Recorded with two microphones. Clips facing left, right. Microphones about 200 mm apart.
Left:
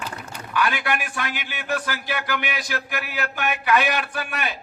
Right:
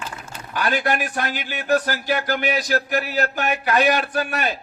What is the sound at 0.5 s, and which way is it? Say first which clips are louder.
A man's voice: right 2 dB; 40° right (ahead or behind).